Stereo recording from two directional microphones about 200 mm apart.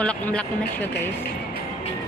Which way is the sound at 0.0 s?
5° left (ahead or behind).